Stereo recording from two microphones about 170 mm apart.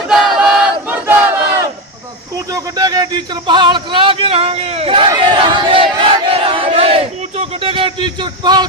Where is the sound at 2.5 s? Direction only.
20° right (ahead or behind).